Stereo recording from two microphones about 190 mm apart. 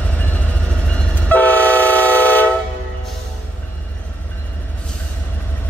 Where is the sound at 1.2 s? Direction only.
10° left (ahead or behind).